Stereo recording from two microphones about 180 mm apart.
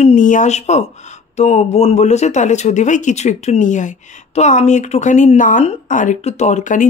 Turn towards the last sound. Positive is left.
turn(degrees=40)  # may be behind; listen again after turning